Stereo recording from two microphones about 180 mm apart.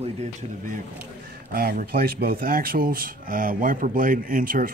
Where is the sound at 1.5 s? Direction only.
55° right (ahead or behind).